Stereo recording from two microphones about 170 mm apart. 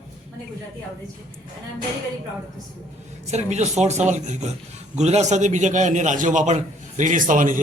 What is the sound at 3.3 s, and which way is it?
A man's voice, 40° right (ahead or behind).